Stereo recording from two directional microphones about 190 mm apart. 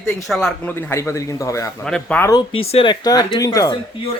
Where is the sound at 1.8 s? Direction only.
5° left (ahead or behind).